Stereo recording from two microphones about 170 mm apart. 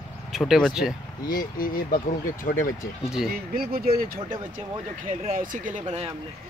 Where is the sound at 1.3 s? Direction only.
60° left (ahead or behind).